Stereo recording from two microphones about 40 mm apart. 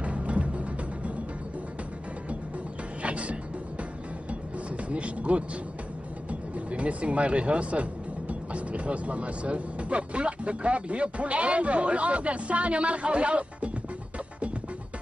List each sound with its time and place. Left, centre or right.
0.0 s music: right
3.0 s music: right
6.5 s speech: right